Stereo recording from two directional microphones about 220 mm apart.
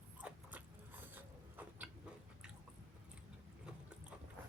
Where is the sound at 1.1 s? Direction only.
10° right (ahead or behind).